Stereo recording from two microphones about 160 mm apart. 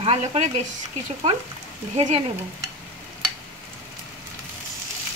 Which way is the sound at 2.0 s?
35° right (ahead or behind).